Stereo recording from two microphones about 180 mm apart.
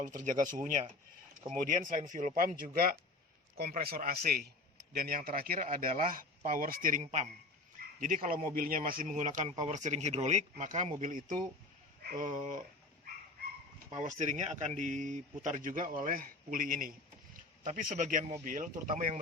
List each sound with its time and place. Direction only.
0.0 s a man's voice: 45° right (ahead or behind)
7.8 s a sound: 50° right (ahead or behind)
8.5 s a man's voice: 50° right (ahead or behind)
14.0 s a man's voice: 40° right (ahead or behind)